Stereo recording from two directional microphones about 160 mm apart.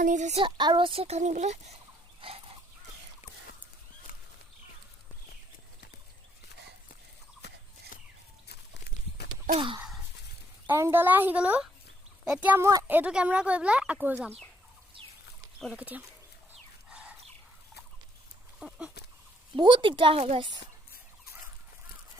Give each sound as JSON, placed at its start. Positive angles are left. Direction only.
{"t": 0.0, "sound": "speech", "side_deg": -50}
{"t": 0.4, "sound": "a child's voice", "side_deg": -30}
{"t": 2.2, "sound": "dog", "side_deg": -35}
{"t": 7.9, "sound": "a sound", "side_deg": 55}
{"t": 10.7, "sound": "a woman's voice", "side_deg": -15}
{"t": 15.7, "sound": "a woman's voice", "side_deg": -10}
{"t": 16.9, "sound": "chicken", "side_deg": -5}
{"t": 18.6, "sound": "a sound", "side_deg": -10}
{"t": 19.5, "sound": "a child's voice", "side_deg": -30}